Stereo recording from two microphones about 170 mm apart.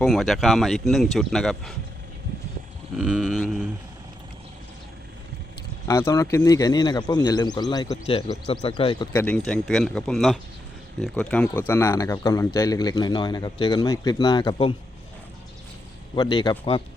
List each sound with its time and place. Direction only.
0.0 s speech: centre (ahead or behind)
2.9 s speech: 5° right (ahead or behind)
5.9 s speech: 20° left (ahead or behind)
9.1 s speech: 5° left (ahead or behind); by 14.8 s 30° left (ahead or behind)
16.1 s speech: 25° left (ahead or behind)